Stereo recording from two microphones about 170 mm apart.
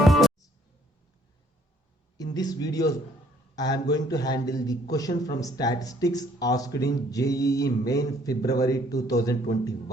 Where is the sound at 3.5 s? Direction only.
25° left (ahead or behind).